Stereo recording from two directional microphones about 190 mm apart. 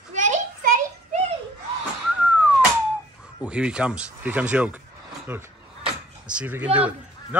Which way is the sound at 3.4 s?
5° right (ahead or behind).